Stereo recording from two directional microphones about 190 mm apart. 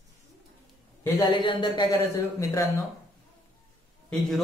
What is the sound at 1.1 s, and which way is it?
Speech, 25° left (ahead or behind).